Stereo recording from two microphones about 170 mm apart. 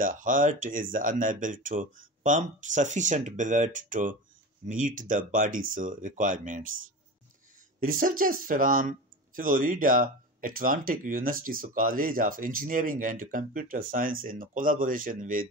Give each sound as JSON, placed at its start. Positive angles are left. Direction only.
{"t": 0.0, "sound": "speech", "side_deg": -50}
{"t": 7.8, "sound": "speech", "side_deg": -55}